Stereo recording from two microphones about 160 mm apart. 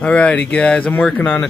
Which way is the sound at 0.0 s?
5° left (ahead or behind).